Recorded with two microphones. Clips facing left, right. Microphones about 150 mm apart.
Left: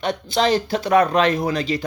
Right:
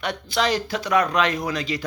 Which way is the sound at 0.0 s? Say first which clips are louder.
Left 4 dB; 25° left (ahead or behind).